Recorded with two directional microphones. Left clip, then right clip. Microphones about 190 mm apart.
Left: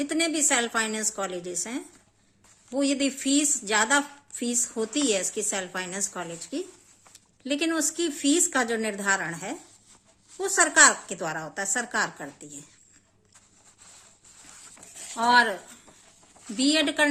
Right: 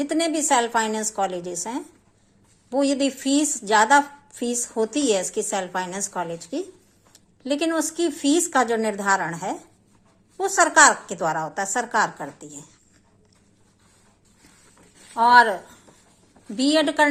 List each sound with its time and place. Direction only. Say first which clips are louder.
0.0 s a woman's voice: right 3 dB; 25° left (ahead or behind)
15.1 s a woman's voice: right 6 dB; 25° left (ahead or behind)